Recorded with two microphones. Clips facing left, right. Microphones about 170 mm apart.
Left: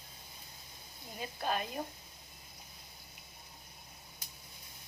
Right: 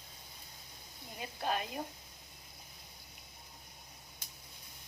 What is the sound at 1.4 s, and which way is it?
Speech, 20° right (ahead or behind).